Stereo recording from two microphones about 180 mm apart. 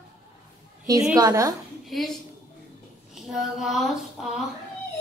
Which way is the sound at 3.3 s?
Centre (ahead or behind).